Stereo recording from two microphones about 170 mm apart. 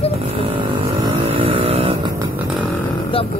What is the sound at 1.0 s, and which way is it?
Vehicle, 30° right (ahead or behind).